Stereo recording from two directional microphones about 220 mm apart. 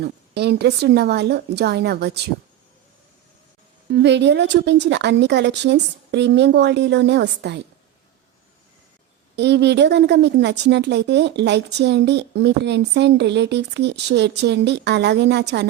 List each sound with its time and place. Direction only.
0.0 s speech: 50° right (ahead or behind)
3.9 s speech: 50° right (ahead or behind)
9.3 s speech: 50° right (ahead or behind)